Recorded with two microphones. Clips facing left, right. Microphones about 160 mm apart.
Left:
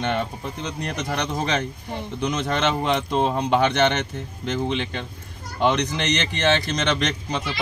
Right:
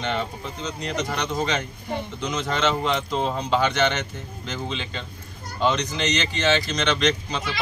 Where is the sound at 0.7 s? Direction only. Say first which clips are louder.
Right 1 dB; 55° left (ahead or behind).